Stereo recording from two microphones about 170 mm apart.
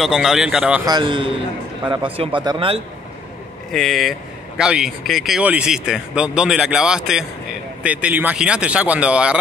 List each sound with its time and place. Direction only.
0.0 s speech: centre (ahead or behind)
0.8 s a man's voice: 25° right (ahead or behind)
3.7 s speech: centre (ahead or behind)